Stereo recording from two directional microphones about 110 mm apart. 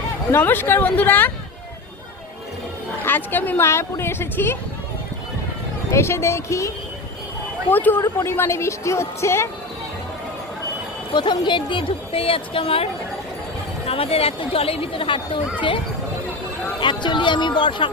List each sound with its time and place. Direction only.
0.3 s speech: 20° left (ahead or behind)
3.0 s speech: 20° left (ahead or behind)
5.9 s speech: 25° left (ahead or behind)
11.1 s speech: 45° left (ahead or behind)
16.8 s speech: 45° left (ahead or behind)